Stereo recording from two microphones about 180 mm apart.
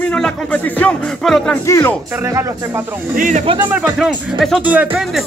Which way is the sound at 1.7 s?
15° left (ahead or behind).